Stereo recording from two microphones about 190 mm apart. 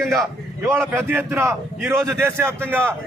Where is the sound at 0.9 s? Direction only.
10° right (ahead or behind).